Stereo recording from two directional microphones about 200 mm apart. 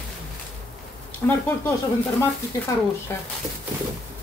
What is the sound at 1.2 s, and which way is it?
Speech, 10° left (ahead or behind).